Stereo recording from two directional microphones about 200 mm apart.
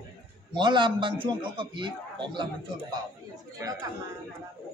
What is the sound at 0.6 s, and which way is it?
A man's voice, 25° right (ahead or behind).